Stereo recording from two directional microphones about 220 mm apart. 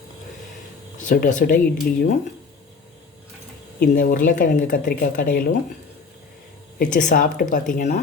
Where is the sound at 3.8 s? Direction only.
40° left (ahead or behind).